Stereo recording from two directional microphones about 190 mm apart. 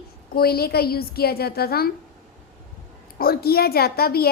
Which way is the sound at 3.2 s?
55° left (ahead or behind).